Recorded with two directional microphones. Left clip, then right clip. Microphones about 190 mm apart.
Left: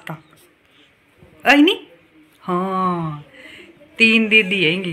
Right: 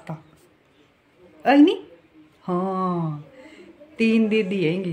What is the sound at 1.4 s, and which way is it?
A woman's voice, centre (ahead or behind).